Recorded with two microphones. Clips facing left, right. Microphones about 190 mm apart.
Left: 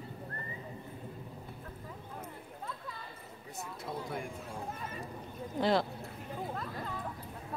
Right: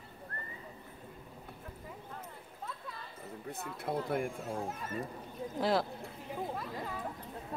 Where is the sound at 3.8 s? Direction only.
55° right (ahead or behind).